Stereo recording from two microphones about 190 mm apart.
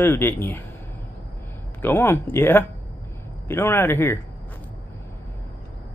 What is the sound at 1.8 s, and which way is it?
Speech, 15° left (ahead or behind).